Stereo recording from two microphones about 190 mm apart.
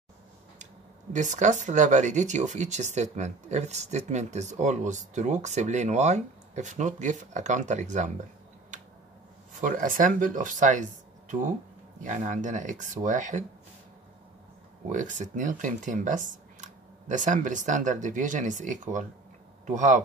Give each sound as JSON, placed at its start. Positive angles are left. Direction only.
{"t": 1.1, "sound": "speech", "side_deg": -40}
{"t": 9.5, "sound": "speech", "side_deg": -45}
{"t": 14.9, "sound": "speech", "side_deg": -40}